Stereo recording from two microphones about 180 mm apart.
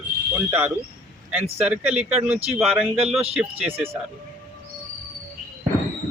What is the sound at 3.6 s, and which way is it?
Speech, 35° right (ahead or behind).